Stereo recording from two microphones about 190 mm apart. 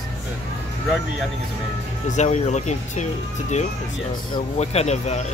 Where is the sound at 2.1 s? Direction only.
40° left (ahead or behind).